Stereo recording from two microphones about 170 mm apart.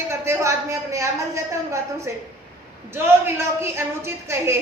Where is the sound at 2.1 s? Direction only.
15° right (ahead or behind).